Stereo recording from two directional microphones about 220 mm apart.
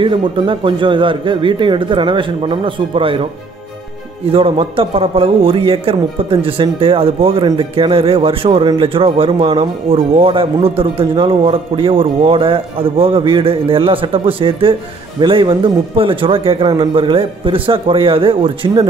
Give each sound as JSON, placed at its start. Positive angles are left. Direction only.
{"t": 0.0, "sound": "a man's voice", "side_deg": -25}
{"t": 4.3, "sound": "a man's voice", "side_deg": -25}